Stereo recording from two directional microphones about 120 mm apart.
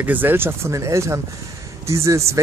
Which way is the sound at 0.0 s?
15° right (ahead or behind).